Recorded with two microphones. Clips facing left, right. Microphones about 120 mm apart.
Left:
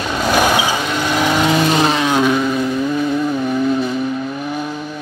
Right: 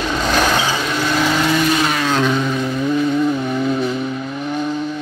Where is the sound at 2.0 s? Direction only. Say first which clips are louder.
Left 2 dB; 10° left (ahead or behind).